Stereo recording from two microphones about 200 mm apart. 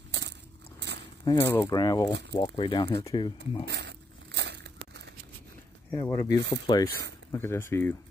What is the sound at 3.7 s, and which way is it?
Crumpling, 60° right (ahead or behind).